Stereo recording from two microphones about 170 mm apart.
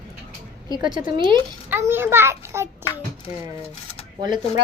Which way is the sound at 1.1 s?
30° right (ahead or behind).